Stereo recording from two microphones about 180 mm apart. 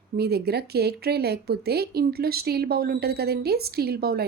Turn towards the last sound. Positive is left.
turn(degrees=-60)  # may be behind; listen again after turning